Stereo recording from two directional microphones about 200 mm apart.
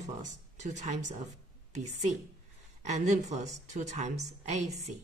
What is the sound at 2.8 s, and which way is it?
A woman's voice, 35° right (ahead or behind).